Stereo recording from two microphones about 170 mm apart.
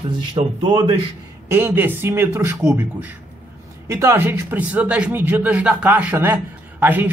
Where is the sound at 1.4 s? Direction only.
15° right (ahead or behind).